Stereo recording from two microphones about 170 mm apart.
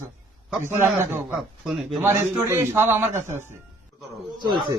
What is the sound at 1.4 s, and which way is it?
Speech, centre (ahead or behind).